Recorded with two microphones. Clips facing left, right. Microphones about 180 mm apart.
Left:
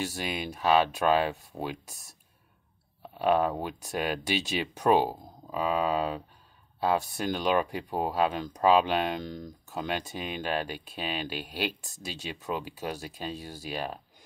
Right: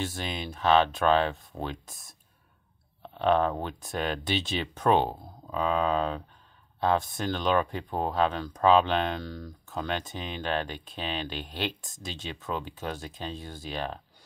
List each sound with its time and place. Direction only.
0.0 s speech: 10° left (ahead or behind)